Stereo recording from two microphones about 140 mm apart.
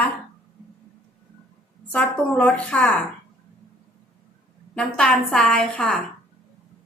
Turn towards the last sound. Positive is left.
turn(degrees=5)  # may be behind; listen again after turning